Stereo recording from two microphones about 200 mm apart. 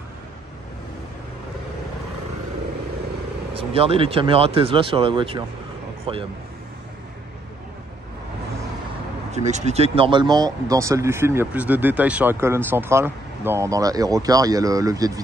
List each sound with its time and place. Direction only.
3.5 s speech: 30° right (ahead or behind)
9.3 s speech: 35° right (ahead or behind); by 15.2 s 20° right (ahead or behind)